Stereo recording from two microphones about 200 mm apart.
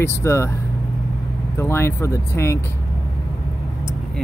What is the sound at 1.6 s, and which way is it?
Speech, 10° left (ahead or behind).